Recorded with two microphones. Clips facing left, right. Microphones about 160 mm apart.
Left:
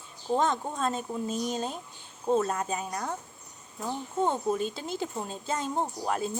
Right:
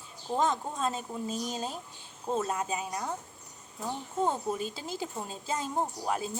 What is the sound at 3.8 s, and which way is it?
Speech, 20° left (ahead or behind).